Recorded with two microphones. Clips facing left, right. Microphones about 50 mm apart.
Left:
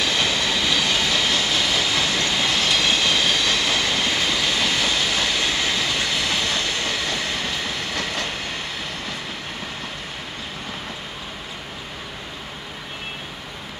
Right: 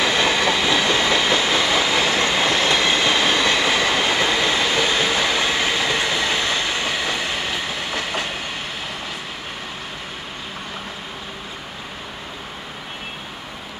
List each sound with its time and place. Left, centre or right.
0.0 s train: right; by 8.3 s centre